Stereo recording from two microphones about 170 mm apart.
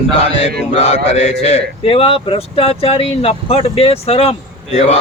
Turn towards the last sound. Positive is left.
turn(degrees=40)  # may be behind; listen again after turning